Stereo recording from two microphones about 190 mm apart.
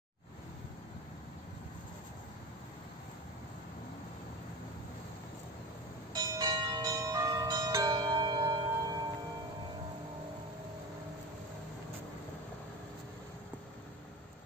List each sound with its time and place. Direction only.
6.1 s bell: 20° right (ahead or behind)